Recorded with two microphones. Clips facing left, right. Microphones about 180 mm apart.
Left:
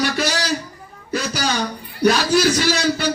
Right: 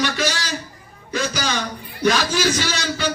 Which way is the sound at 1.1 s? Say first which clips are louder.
Left 1 dB; 40° left (ahead or behind).